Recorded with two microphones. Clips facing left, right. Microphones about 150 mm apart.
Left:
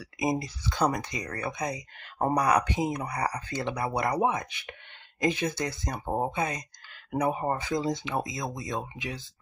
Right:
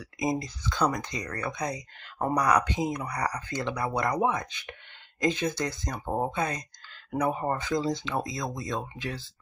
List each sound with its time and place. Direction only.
0.0 s speech: 25° left (ahead or behind)